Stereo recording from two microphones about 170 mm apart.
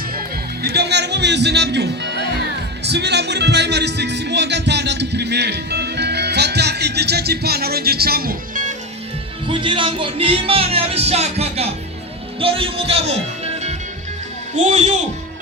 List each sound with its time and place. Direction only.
0.6 s speech: 75° right (ahead or behind); by 8.7 s 55° right (ahead or behind)
9.5 s music: 30° right (ahead or behind)
12.4 s a man's voice: 35° right (ahead or behind)